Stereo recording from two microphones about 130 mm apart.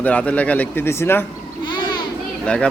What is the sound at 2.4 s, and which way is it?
Speech, 10° left (ahead or behind).